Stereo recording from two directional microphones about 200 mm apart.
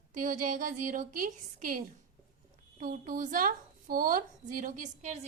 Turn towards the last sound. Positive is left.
turn(degrees=-35)  # may be behind; listen again after turning